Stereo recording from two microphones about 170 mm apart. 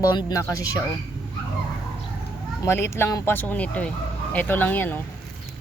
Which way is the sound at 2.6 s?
15° left (ahead or behind).